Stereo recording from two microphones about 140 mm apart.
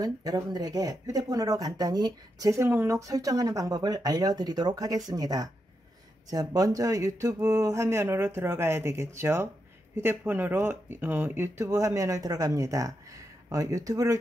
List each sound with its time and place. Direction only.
0.0 s speech: 25° right (ahead or behind)